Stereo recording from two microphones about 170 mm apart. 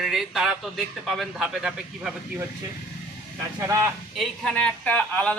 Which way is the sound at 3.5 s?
20° right (ahead or behind).